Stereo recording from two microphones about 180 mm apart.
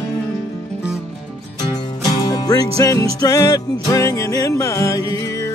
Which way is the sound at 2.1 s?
20° left (ahead or behind).